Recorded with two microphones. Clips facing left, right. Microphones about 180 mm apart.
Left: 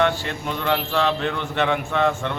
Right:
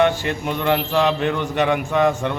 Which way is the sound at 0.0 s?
15° right (ahead or behind).